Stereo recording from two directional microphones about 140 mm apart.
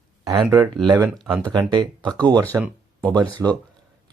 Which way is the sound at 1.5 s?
30° right (ahead or behind).